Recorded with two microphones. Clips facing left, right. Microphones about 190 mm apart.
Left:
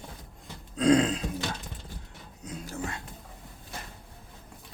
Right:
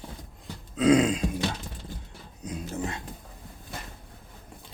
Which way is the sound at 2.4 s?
20° right (ahead or behind).